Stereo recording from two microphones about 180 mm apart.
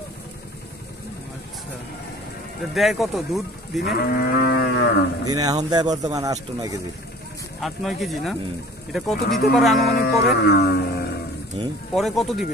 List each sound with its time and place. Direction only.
2.7 s speech: centre (ahead or behind)
3.8 s speech: 60° left (ahead or behind)
5.3 s speech: 20° right (ahead or behind)
7.6 s speech: centre (ahead or behind)
9.9 s speech: 60° left (ahead or behind)
11.9 s speech: centre (ahead or behind)